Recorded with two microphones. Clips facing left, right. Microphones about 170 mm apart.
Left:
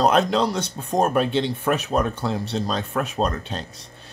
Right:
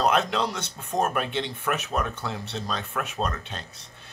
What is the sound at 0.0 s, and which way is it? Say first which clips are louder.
Speech: left 5 dB; 35° left (ahead or behind).